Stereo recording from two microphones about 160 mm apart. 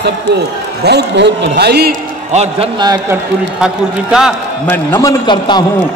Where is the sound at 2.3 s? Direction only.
45° right (ahead or behind).